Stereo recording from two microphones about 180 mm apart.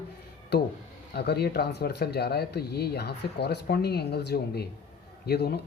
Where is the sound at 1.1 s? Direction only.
65° left (ahead or behind).